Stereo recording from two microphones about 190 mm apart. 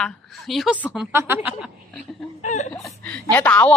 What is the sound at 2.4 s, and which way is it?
Chuckle, 40° left (ahead or behind).